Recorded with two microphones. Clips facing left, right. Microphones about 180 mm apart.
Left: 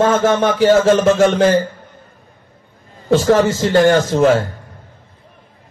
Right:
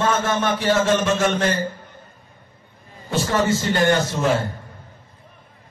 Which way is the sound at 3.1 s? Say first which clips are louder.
Left 8 dB; 90° left.